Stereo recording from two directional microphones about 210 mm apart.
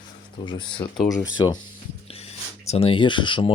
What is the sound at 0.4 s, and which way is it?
Speech, 20° left (ahead or behind).